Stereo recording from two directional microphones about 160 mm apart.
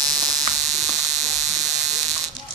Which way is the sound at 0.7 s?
45° right (ahead or behind).